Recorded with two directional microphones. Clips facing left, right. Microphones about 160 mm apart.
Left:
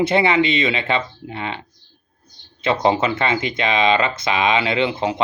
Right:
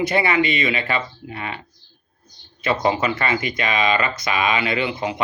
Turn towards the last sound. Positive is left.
turn(degrees=25)  # may be behind; listen again after turning